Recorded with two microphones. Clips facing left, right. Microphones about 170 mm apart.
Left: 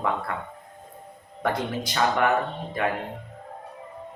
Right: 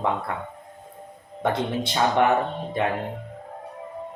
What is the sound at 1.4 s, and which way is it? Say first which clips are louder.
Speech: right 2 dB; 25° right (ahead or behind).